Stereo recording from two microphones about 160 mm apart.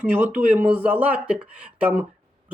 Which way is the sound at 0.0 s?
10° right (ahead or behind).